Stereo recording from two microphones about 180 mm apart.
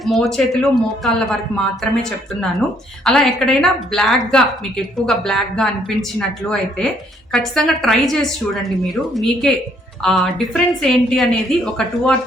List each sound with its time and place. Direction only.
0.0 s a woman's voice: centre (ahead or behind)